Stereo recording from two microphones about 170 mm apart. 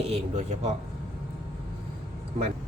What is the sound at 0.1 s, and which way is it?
Speech, 40° right (ahead or behind).